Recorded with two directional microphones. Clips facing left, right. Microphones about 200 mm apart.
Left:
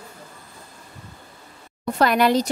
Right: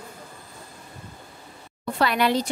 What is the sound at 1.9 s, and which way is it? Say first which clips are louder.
Speech: left 4 dB; 45° left (ahead or behind).